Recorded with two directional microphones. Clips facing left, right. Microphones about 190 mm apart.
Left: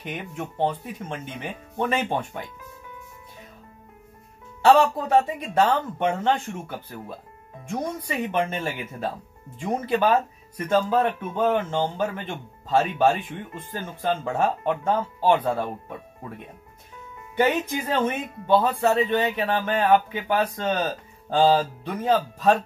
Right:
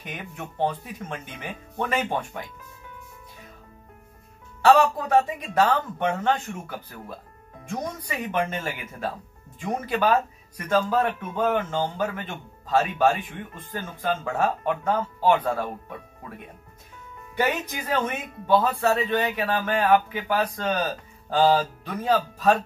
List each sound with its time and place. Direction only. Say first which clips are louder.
0.0 s speech: left 4 dB; 20° left (ahead or behind)
4.6 s speech: left 1 dB; 20° left (ahead or behind)
8.1 s speech: left 1 dB; 20° left (ahead or behind)
17.4 s speech: left 4 dB; 20° left (ahead or behind)